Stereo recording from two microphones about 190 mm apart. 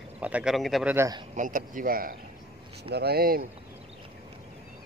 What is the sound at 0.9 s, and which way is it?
Speech, 20° right (ahead or behind).